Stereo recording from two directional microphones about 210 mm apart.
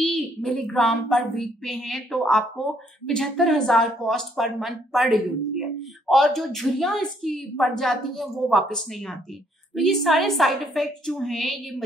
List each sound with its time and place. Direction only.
0.0 s a woman's voice: centre (ahead or behind)